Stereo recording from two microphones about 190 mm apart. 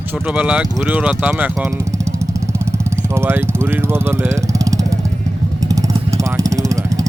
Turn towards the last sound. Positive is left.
turn(degrees=-15)  # may be behind; listen again after turning